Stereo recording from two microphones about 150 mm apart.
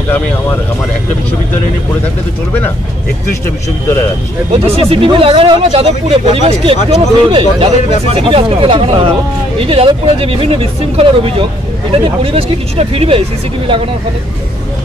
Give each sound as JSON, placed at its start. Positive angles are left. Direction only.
{"t": 4.5, "sound": "speech", "side_deg": -40}